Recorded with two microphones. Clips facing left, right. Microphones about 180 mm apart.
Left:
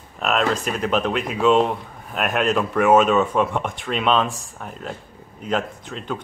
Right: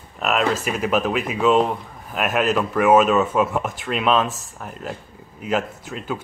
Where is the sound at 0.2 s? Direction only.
5° right (ahead or behind).